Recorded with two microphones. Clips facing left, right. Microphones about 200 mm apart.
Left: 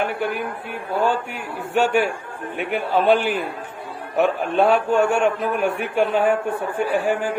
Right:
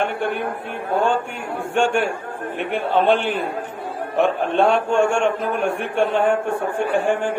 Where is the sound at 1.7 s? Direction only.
5° left (ahead or behind).